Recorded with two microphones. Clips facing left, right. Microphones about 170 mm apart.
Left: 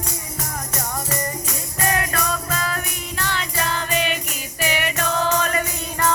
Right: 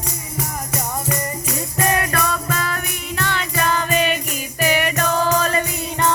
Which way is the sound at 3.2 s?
60° right (ahead or behind).